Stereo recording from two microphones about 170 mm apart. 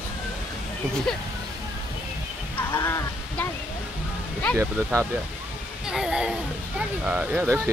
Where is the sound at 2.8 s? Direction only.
15° left (ahead or behind).